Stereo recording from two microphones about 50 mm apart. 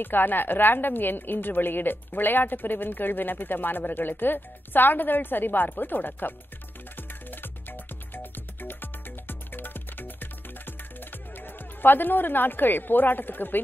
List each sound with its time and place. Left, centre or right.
0.0 s a woman's voice: left
7.0 s music: left